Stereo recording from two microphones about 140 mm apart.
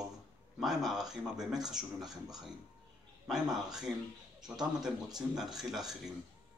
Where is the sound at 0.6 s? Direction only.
Centre (ahead or behind).